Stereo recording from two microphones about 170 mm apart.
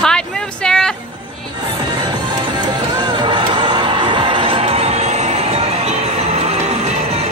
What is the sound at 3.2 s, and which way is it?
Music, 30° right (ahead or behind).